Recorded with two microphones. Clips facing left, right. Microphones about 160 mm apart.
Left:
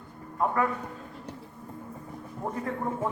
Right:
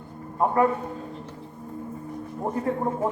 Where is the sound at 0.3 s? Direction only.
30° right (ahead or behind).